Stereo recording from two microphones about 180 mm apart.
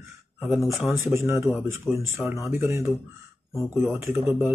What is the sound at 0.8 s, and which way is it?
A man's voice, 10° right (ahead or behind).